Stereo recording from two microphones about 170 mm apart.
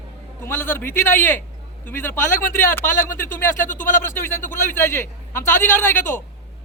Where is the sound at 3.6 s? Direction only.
50° left (ahead or behind).